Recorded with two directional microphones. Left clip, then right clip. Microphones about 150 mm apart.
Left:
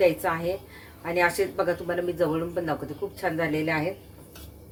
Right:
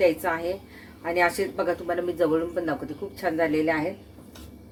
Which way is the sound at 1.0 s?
30° right (ahead or behind).